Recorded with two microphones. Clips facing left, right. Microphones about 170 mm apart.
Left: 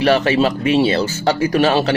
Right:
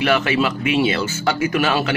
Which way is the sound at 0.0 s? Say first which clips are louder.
Left 4 dB; 35° left (ahead or behind).